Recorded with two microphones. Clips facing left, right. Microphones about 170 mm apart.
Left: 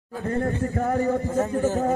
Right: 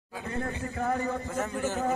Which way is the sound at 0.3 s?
45° left (ahead or behind).